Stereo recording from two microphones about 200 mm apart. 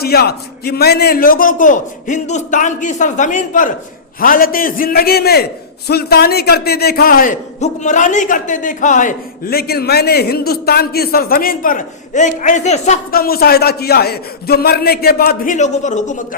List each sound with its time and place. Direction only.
0.0 s a man's voice: 50° left (ahead or behind); by 13.0 s 35° left (ahead or behind)
13.1 s a man's voice: 50° left (ahead or behind)